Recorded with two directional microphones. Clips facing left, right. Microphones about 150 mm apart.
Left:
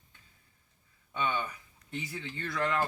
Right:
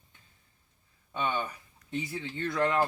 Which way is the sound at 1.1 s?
25° right (ahead or behind).